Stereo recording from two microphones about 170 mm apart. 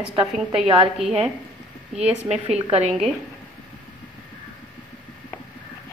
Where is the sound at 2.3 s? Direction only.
40° right (ahead or behind).